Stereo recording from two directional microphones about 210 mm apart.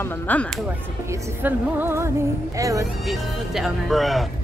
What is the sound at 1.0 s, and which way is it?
Speech, 10° right (ahead or behind).